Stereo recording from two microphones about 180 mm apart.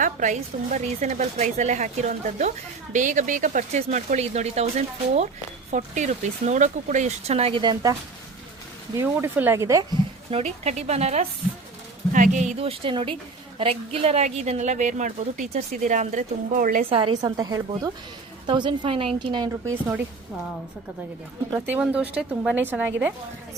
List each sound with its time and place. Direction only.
0.0 s a woman's voice: 45° right (ahead or behind); by 7.9 s 25° right (ahead or behind)
9.0 s a woman's voice: 15° right (ahead or behind)
10.3 s a woman's voice: 35° right (ahead or behind)
16.9 s a woman's voice: 25° right (ahead or behind)
21.5 s a woman's voice: 10° right (ahead or behind)